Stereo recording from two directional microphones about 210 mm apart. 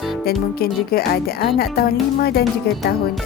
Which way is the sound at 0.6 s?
45° left (ahead or behind).